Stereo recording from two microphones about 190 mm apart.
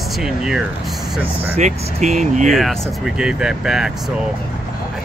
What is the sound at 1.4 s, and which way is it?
Speech, 35° right (ahead or behind).